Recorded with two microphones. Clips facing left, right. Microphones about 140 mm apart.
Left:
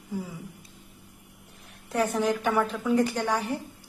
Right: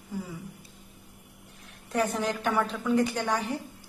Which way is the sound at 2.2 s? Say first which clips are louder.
Left 3 dB; 5° left (ahead or behind).